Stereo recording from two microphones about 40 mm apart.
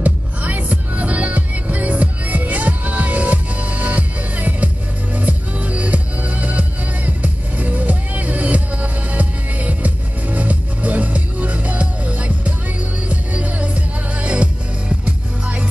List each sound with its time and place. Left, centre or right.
0.0 s music: right